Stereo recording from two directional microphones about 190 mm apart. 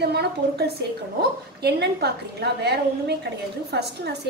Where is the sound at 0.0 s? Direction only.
60° right (ahead or behind).